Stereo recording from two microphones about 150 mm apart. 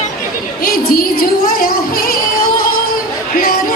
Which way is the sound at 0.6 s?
75° left (ahead or behind).